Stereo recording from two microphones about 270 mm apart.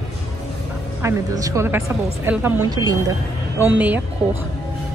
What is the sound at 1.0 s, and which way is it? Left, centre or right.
A woman's voice, centre.